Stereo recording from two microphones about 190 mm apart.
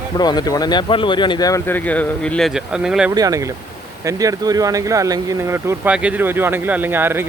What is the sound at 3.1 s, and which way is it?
Speech, 20° right (ahead or behind).